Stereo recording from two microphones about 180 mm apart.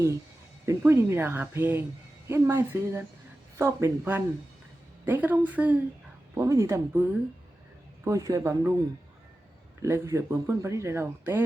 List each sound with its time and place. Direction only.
0.6 s speech: 15° right (ahead or behind)
9.8 s speech: 15° right (ahead or behind)